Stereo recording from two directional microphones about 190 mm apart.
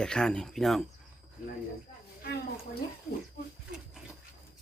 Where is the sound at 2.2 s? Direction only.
55° left (ahead or behind).